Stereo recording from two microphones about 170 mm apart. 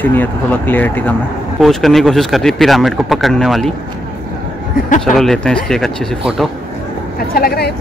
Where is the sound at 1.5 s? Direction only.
Centre (ahead or behind).